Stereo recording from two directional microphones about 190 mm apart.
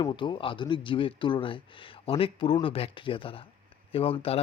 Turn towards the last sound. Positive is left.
turn(degrees=30)  # may be behind; listen again after turning